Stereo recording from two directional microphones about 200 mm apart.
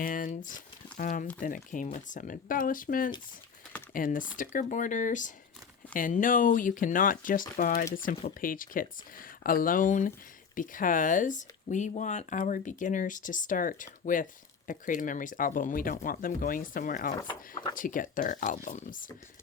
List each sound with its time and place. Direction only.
0.0 s speech: 40° left (ahead or behind)